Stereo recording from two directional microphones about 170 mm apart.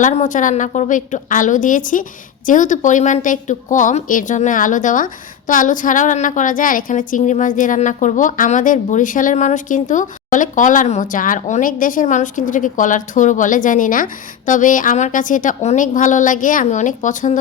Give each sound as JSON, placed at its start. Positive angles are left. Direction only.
{"t": 0.0, "sound": "a woman's voice", "side_deg": 45}